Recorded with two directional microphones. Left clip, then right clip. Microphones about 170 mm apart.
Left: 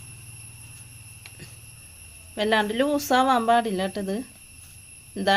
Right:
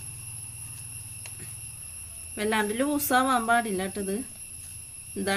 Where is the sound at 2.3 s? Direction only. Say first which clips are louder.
Left 4 dB; 35° left (ahead or behind).